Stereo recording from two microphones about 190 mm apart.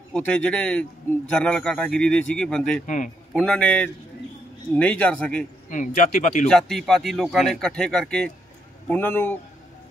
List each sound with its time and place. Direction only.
0.1 s speech: 5° left (ahead or behind)
5.7 s speech: 40° left (ahead or behind)
6.4 s speech: 5° left (ahead or behind)